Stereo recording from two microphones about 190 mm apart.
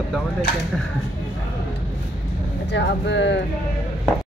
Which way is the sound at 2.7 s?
70° left (ahead or behind).